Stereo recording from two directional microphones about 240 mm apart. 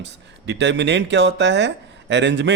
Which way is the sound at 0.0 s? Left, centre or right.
Right.